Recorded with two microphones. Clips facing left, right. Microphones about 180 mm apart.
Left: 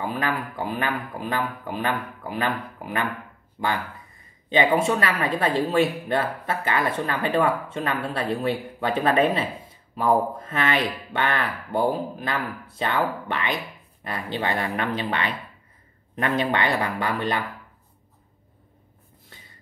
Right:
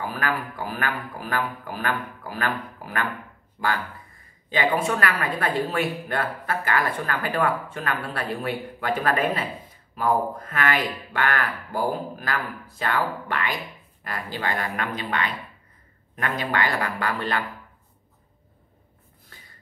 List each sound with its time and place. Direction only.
0.0 s speech: 25° left (ahead or behind)